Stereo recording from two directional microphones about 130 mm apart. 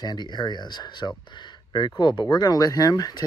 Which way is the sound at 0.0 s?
35° left (ahead or behind).